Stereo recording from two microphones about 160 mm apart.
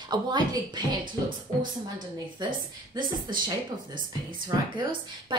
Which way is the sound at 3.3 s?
30° right (ahead or behind).